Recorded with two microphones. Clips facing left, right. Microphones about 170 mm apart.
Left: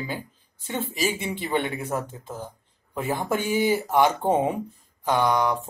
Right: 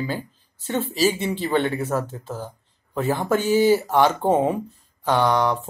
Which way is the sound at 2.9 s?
10° left (ahead or behind).